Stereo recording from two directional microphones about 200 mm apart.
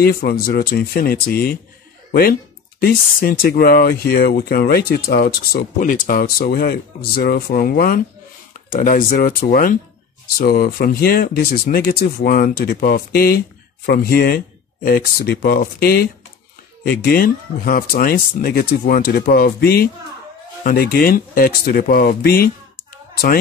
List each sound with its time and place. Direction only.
0.0 s speech: 50° left (ahead or behind)
2.8 s speech: 45° left (ahead or behind)